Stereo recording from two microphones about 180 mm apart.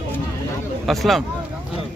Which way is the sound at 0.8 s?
Centre (ahead or behind).